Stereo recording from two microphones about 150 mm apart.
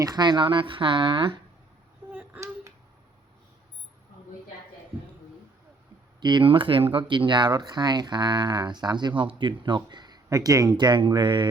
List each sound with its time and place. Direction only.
0.0 s speech: 30° right (ahead or behind)
2.1 s a sound: 15° right (ahead or behind)
6.1 s speech: 30° right (ahead or behind)